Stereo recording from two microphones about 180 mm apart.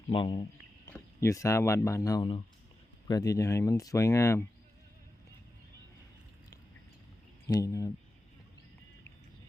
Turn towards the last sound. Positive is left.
turn(degrees=20)  # may be behind; listen again after turning